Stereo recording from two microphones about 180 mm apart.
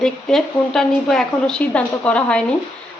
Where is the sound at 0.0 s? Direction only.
5° left (ahead or behind).